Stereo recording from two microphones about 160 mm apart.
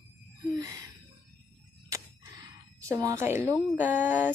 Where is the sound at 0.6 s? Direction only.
20° right (ahead or behind).